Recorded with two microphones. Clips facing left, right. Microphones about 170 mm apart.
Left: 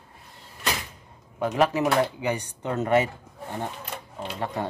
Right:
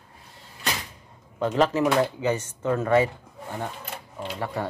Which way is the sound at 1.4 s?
10° left (ahead or behind).